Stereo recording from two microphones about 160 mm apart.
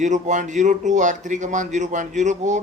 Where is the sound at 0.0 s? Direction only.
50° right (ahead or behind).